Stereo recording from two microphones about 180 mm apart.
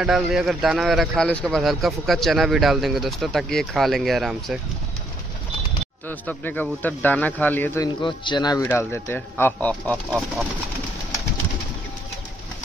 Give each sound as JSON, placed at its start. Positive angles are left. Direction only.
{"t": 0.0, "sound": "a man's voice", "side_deg": 0}
{"t": 6.0, "sound": "speech", "side_deg": 10}
{"t": 7.8, "sound": "speech", "side_deg": 25}